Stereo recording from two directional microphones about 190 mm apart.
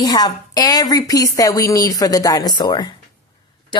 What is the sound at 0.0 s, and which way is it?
A woman's voice, 20° left (ahead or behind).